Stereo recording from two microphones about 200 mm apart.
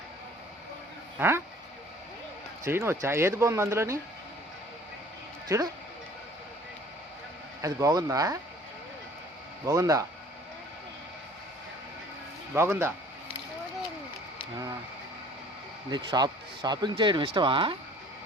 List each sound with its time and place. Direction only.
1.2 s speech: 10° right (ahead or behind)
2.6 s speech: 10° right (ahead or behind)
5.5 s speech: 15° right (ahead or behind)
7.6 s speech: 15° right (ahead or behind)
9.6 s speech: 15° right (ahead or behind)
12.5 s speech: 10° right (ahead or behind)
15.9 s speech: 20° right (ahead or behind)